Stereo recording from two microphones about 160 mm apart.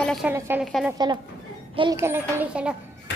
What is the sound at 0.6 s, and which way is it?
Speech, centre (ahead or behind).